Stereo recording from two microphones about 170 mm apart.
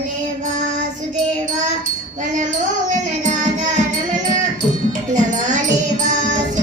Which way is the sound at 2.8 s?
45° right (ahead or behind).